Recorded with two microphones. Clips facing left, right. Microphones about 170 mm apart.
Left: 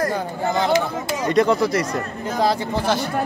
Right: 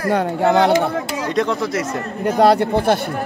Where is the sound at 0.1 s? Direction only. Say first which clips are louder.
Right 7 dB; 70° right (ahead or behind).